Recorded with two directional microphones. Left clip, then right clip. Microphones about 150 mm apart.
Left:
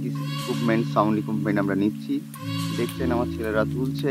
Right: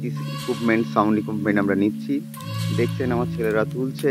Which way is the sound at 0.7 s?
15° right (ahead or behind).